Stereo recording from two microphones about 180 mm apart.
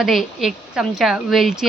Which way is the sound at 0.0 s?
Centre (ahead or behind).